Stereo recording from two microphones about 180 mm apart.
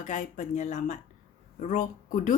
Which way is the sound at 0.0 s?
45° left (ahead or behind).